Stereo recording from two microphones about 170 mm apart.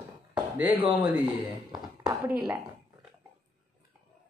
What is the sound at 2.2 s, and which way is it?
Speech, 15° right (ahead or behind).